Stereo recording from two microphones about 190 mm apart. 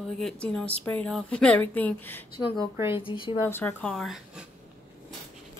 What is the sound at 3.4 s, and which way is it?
Speech, 10° left (ahead or behind).